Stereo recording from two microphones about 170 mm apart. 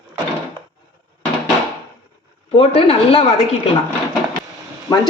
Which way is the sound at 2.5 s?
35° left (ahead or behind).